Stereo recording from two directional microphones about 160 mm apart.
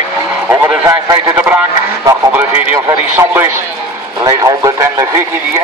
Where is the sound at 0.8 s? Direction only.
25° right (ahead or behind).